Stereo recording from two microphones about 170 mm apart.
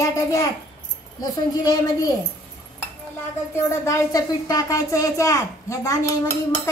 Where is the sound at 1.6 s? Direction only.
25° left (ahead or behind).